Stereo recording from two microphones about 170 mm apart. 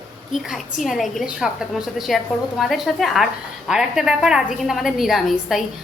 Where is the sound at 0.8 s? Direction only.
Centre (ahead or behind).